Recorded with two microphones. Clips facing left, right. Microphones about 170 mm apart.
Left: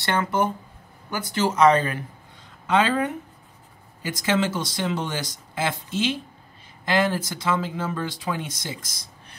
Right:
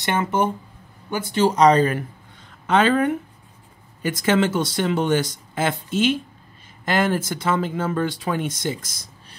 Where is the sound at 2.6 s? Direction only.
55° right (ahead or behind).